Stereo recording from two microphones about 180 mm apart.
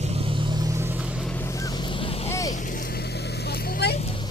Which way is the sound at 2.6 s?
50° left (ahead or behind).